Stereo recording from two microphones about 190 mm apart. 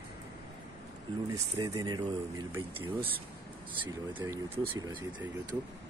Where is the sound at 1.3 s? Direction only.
20° right (ahead or behind).